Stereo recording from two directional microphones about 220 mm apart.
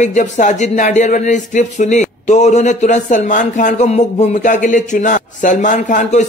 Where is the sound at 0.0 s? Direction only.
35° left (ahead or behind).